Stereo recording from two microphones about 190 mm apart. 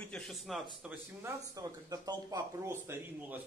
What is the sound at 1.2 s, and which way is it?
A man's voice, 20° right (ahead or behind).